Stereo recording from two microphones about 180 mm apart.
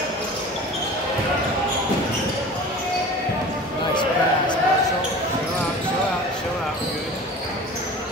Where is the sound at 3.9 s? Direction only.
25° left (ahead or behind).